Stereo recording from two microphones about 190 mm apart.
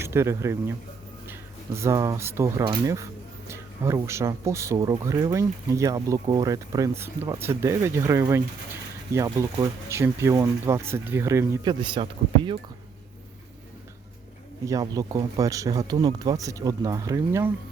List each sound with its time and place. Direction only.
0.0 s speech: 15° right (ahead or behind)
14.6 s speech: 20° right (ahead or behind)